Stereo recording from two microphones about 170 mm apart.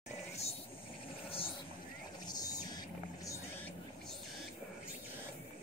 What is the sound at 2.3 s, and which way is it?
Vehicle, 20° left (ahead or behind).